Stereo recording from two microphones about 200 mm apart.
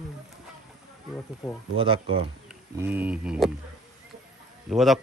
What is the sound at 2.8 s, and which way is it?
Speech, 10° right (ahead or behind).